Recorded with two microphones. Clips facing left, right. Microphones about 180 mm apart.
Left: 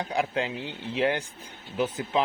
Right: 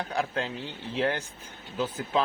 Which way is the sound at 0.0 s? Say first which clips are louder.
Left 2 dB; 15° left (ahead or behind).